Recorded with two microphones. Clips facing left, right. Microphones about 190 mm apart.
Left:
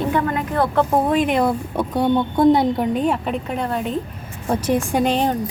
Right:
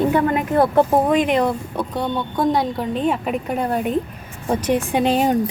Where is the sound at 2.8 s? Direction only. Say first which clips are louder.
Left 3 dB; 10° left (ahead or behind).